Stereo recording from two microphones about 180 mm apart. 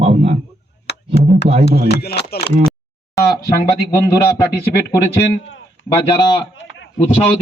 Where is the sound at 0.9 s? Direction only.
70° left (ahead or behind).